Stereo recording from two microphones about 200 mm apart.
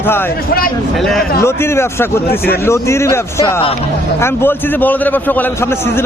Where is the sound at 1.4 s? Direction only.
10° left (ahead or behind).